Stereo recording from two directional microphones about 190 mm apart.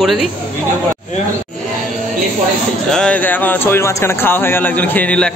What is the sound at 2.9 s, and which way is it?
Speech, 5° left (ahead or behind).